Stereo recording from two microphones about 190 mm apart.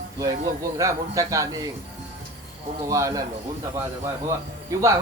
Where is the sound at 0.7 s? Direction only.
15° right (ahead or behind).